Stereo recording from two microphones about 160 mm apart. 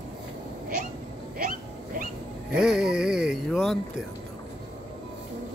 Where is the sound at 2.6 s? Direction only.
5° right (ahead or behind).